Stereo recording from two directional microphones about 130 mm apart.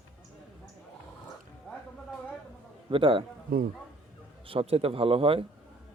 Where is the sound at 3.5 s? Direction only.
90° right.